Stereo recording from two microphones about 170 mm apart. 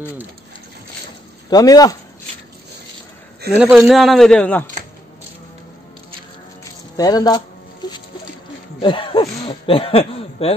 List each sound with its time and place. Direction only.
1.5 s speech: 20° left (ahead or behind)
3.5 s a man's voice: 5° right (ahead or behind)
7.0 s a sound: 25° left (ahead or behind)
8.8 s speech: 30° left (ahead or behind)